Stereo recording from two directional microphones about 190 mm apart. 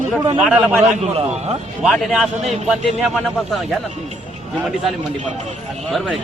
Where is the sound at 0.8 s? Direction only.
35° right (ahead or behind).